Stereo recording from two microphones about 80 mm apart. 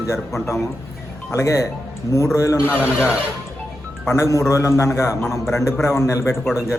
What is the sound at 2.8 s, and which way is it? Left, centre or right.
Speech, left.